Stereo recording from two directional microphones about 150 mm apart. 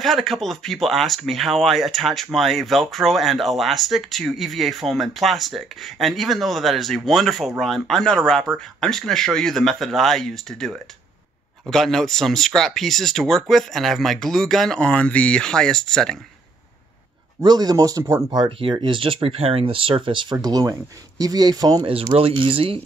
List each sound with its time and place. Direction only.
0.0 s speech: centre (ahead or behind)
17.4 s speech: 25° right (ahead or behind)